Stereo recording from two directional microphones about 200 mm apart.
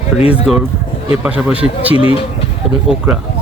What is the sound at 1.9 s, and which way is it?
Speech, 25° left (ahead or behind).